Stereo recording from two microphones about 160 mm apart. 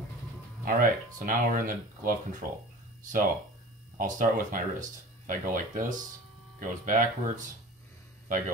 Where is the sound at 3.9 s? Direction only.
55° right (ahead or behind).